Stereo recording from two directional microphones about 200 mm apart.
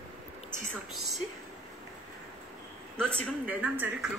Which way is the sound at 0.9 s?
Centre (ahead or behind).